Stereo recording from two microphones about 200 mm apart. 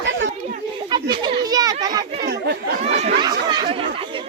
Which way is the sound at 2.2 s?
55° right (ahead or behind).